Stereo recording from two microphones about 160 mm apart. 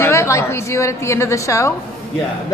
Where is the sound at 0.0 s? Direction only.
20° left (ahead or behind).